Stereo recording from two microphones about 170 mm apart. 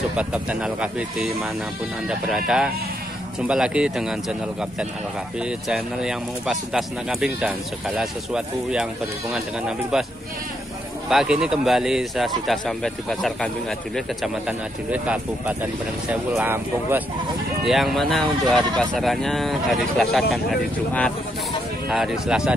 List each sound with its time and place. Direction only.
0.1 s speech: 5° right (ahead or behind)
11.1 s speech: 5° right (ahead or behind)
14.9 s speech: 10° right (ahead or behind)
17.6 s speech: centre (ahead or behind)
21.8 s speech: 5° right (ahead or behind)